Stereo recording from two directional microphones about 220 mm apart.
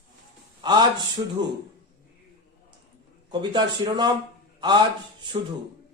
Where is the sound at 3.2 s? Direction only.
20° right (ahead or behind).